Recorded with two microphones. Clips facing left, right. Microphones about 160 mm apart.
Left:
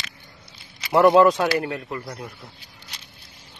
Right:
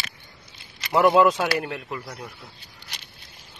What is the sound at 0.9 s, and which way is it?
Speech, centre (ahead or behind).